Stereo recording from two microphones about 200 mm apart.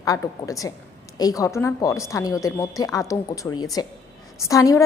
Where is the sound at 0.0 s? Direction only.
15° left (ahead or behind).